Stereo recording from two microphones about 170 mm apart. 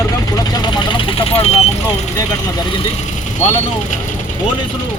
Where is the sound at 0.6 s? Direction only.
30° left (ahead or behind).